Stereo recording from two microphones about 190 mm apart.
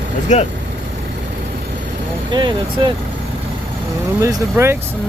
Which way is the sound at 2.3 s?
25° right (ahead or behind).